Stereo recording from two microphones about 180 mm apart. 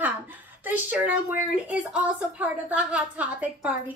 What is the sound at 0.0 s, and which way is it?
A woman's voice, 10° right (ahead or behind).